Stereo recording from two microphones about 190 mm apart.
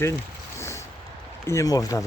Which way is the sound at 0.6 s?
15° left (ahead or behind).